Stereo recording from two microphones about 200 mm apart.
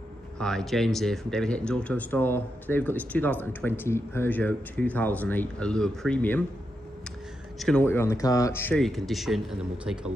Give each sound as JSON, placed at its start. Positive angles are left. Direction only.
{"t": 0.4, "sound": "speech", "side_deg": 5}
{"t": 7.5, "sound": "speech", "side_deg": 5}